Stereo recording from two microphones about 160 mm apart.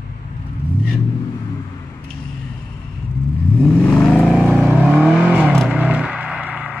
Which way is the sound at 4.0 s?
5° left (ahead or behind).